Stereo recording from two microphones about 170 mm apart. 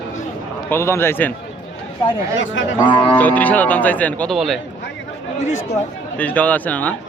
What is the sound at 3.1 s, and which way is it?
Speech, 10° left (ahead or behind).